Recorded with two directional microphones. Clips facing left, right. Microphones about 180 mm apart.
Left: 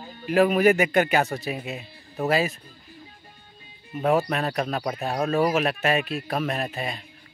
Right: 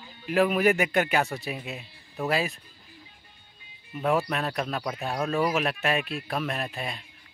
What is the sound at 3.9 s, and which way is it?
Speech, 40° left (ahead or behind).